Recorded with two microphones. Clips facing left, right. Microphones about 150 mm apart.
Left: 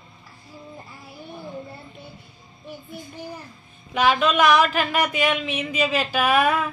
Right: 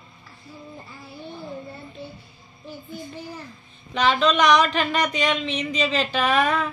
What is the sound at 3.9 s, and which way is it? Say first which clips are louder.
Speech: left 1 dB; 5° left (ahead or behind).